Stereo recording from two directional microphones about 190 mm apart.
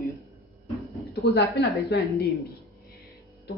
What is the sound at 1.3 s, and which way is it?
Speech, 60° left (ahead or behind).